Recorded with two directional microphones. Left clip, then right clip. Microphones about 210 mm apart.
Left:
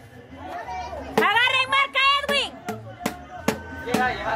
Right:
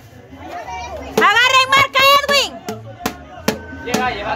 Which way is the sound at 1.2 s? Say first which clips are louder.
Right 8 dB; 30° right (ahead or behind).